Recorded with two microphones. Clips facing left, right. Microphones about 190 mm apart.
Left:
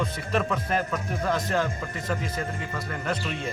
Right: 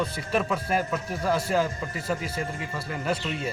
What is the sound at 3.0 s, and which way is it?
Speech, 5° right (ahead or behind).